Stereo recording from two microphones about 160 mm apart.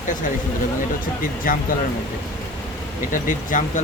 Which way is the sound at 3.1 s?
55° left (ahead or behind).